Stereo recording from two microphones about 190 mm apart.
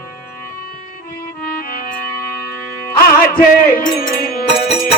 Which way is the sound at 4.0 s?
50° left (ahead or behind).